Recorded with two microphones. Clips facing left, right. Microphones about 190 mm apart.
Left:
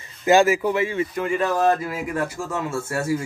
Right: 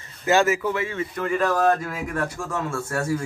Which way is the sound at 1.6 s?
5° left (ahead or behind).